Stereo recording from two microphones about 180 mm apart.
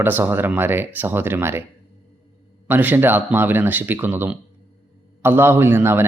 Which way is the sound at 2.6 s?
10° right (ahead or behind).